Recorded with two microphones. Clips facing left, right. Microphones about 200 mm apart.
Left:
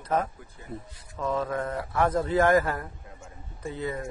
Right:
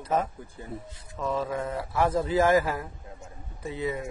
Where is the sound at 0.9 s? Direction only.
25° right (ahead or behind).